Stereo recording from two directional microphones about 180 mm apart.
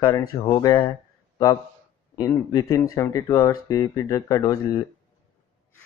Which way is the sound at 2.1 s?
20° left (ahead or behind).